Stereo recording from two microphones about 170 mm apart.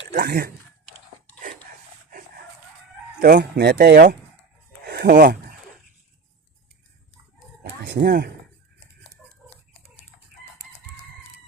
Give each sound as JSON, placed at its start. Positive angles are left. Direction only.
{"t": 0.1, "sound": "speech", "side_deg": -65}
{"t": 2.0, "sound": "dog", "side_deg": -55}
{"t": 3.2, "sound": "speech", "side_deg": -65}
{"t": 7.6, "sound": "speech", "side_deg": -75}